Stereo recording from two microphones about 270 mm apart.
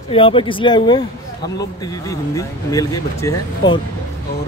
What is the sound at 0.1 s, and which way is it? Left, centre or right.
Speech, centre.